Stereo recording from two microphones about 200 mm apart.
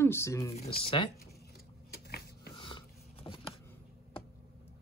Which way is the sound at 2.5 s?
25° left (ahead or behind).